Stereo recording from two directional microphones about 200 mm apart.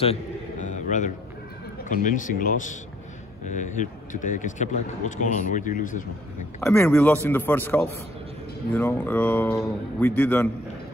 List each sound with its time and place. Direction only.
0.0 s a sound: 35° left (ahead or behind)
1.9 s speech: 40° left (ahead or behind)
6.6 s a man's voice: 5° left (ahead or behind)